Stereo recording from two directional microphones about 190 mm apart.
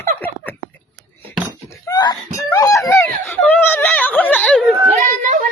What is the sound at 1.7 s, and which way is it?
Screaming, 20° left (ahead or behind).